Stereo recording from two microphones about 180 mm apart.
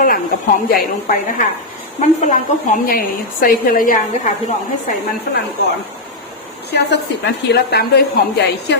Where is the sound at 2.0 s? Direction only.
40° left (ahead or behind).